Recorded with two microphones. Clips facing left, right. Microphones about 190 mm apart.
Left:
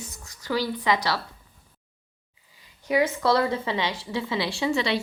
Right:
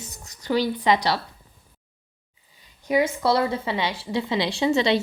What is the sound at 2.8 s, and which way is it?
A woman's voice, 15° right (ahead or behind).